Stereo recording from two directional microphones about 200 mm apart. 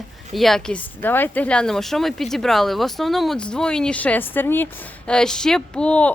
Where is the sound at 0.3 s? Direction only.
Centre (ahead or behind).